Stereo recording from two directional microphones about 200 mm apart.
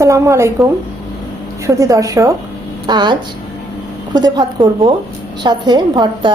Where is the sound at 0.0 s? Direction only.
15° right (ahead or behind).